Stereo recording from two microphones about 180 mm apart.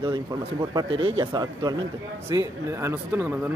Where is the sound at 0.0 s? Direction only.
25° right (ahead or behind).